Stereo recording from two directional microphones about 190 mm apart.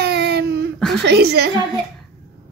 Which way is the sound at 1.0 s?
60° right (ahead or behind).